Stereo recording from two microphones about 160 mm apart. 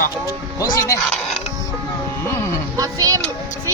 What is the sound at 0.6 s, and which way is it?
Music, 20° left (ahead or behind).